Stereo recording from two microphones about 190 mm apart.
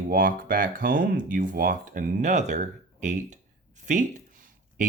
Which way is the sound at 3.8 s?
40° right (ahead or behind).